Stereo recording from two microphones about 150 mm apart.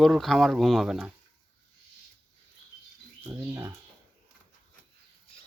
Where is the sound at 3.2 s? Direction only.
20° right (ahead or behind).